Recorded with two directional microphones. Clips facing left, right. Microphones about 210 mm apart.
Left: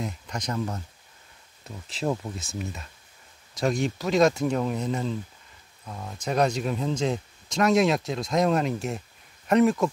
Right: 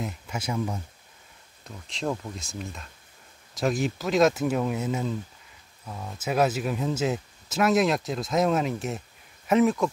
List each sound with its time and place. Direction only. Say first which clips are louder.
0.0 s speech: even; 5° right (ahead or behind)
1.6 s speech: left 2 dB; 5° left (ahead or behind)